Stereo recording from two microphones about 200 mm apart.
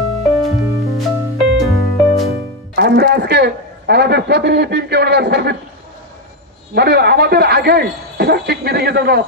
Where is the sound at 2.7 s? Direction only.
50° right (ahead or behind).